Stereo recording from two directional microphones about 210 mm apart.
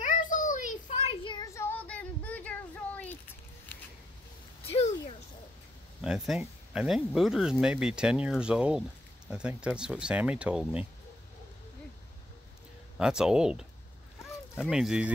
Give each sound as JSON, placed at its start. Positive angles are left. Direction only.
{"t": 0.0, "sound": "child singing", "side_deg": 40}
{"t": 0.8, "sound": "child singing", "side_deg": 25}
{"t": 4.7, "sound": "a sound", "side_deg": 30}
{"t": 5.9, "sound": "speech", "side_deg": 0}
{"t": 12.9, "sound": "speech", "side_deg": -5}